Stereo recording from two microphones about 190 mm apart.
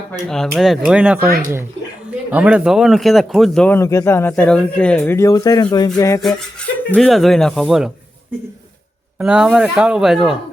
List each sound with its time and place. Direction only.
0.1 s speech: 5° left (ahead or behind); by 5.9 s 20° left (ahead or behind)
6.0 s a sound: 15° left (ahead or behind)
6.9 s speech: 5° left (ahead or behind)
9.1 s speech: 5° right (ahead or behind)